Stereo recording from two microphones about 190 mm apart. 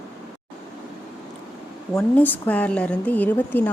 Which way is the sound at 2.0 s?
10° left (ahead or behind).